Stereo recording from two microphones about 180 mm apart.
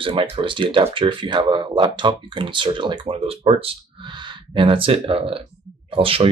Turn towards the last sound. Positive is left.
turn(degrees=-30)  # may be behind; listen again after turning